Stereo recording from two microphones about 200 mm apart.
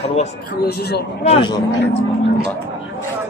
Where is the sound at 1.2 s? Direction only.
25° left (ahead or behind).